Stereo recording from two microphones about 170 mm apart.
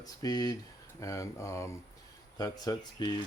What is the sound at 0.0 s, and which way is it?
Speech, 20° left (ahead or behind).